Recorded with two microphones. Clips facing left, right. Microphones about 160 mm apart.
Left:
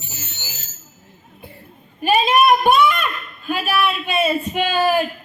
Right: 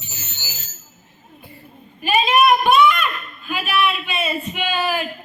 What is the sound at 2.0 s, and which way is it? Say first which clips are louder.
A child's voice: left 1 dB; 45° left (ahead or behind).